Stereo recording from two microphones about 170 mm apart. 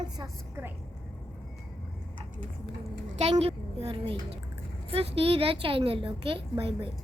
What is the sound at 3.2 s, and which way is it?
Speech, 35° right (ahead or behind).